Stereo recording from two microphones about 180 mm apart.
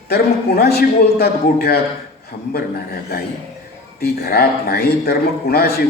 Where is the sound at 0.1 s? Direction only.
60° left (ahead or behind).